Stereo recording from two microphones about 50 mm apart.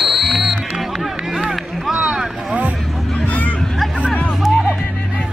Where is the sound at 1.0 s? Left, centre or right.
Centre.